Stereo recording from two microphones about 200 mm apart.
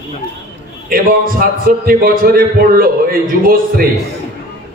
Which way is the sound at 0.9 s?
45° right (ahead or behind).